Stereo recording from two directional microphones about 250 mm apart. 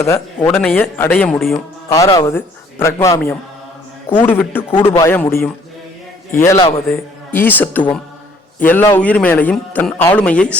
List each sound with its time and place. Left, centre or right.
0.0 s speech: centre
1.9 s a man's voice: centre